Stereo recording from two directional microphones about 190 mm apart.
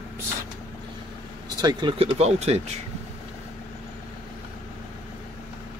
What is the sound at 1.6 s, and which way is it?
Speech, 20° right (ahead or behind).